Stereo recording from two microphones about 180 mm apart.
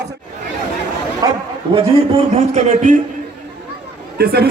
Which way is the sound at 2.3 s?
40° right (ahead or behind).